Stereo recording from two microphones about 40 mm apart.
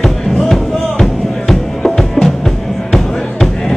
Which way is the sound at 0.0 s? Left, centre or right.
Centre.